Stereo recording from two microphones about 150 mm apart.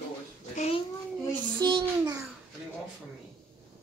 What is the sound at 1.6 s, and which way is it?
Speech, 30° right (ahead or behind).